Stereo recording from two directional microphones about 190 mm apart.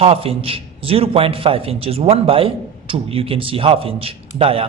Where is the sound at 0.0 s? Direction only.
30° right (ahead or behind).